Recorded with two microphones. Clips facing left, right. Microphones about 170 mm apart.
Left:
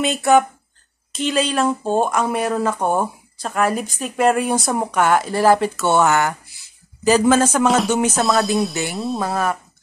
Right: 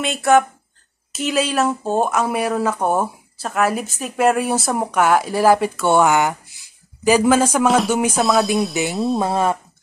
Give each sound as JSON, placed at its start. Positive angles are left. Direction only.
{"t": 0.0, "sound": "music", "side_deg": 0}
{"t": 1.1, "sound": "speech", "side_deg": -5}
{"t": 7.7, "sound": "music", "side_deg": -5}
{"t": 9.2, "sound": "speech", "side_deg": -25}